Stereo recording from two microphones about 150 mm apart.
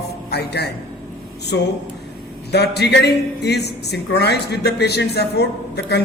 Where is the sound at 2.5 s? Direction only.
90° left.